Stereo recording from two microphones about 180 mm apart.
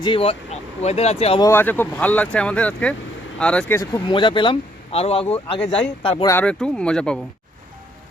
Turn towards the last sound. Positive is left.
turn(degrees=5)  # may be behind; listen again after turning